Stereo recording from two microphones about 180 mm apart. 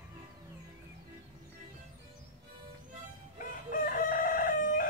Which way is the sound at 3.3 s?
45° left (ahead or behind).